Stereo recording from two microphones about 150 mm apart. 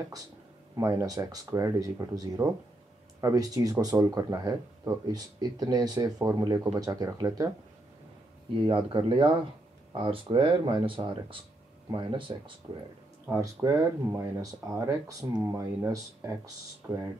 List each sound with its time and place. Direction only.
0.7 s speech: 20° right (ahead or behind)
8.6 s speech: 35° right (ahead or behind)
13.3 s speech: 20° right (ahead or behind)